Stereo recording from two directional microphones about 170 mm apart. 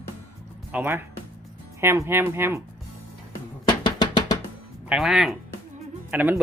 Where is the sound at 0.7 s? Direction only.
10° right (ahead or behind).